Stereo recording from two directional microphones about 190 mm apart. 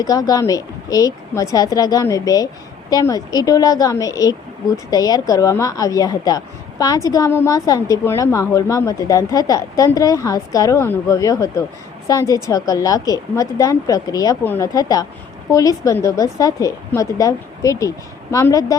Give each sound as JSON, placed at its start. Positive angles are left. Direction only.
{"t": 0.0, "sound": "a woman's voice", "side_deg": 20}